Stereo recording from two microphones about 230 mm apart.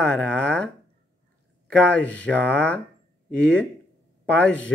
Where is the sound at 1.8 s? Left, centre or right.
Centre.